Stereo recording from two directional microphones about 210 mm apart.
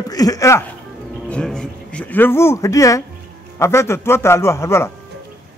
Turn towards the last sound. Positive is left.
turn(degrees=15)  # may be behind; listen again after turning